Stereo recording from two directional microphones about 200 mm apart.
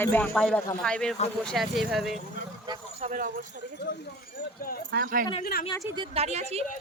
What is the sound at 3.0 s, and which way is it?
Speech, 40° right (ahead or behind).